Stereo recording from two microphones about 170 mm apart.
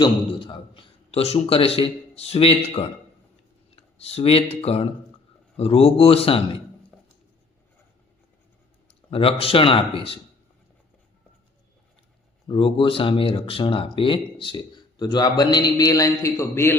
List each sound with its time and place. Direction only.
0.0 s a man's voice: 25° left (ahead or behind)
3.9 s speech: 35° left (ahead or behind)
6.9 s a sound: centre (ahead or behind)
9.0 s speech: 35° left (ahead or behind)
12.5 s speech: 30° left (ahead or behind); by 16.7 s 15° left (ahead or behind)